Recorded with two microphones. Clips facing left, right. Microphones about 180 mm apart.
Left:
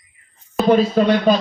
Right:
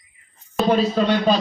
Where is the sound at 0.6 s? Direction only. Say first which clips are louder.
Left 4 dB; centre (ahead or behind).